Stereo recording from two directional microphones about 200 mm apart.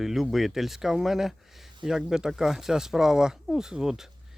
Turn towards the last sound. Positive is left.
turn(degrees=0)  # may be behind; listen again after turning